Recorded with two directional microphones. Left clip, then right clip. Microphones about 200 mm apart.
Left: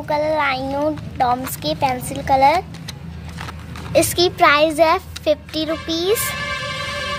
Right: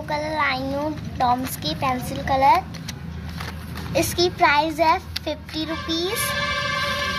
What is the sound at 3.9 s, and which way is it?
A child's voice, 50° left (ahead or behind).